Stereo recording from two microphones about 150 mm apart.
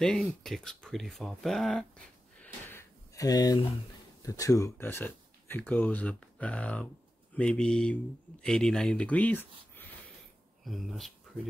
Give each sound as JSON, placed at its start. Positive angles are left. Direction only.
{"t": 0.0, "sound": "speech", "side_deg": 5}
{"t": 2.4, "sound": "a sound", "side_deg": 15}
{"t": 4.2, "sound": "speech", "side_deg": 20}
{"t": 10.6, "sound": "speech", "side_deg": 0}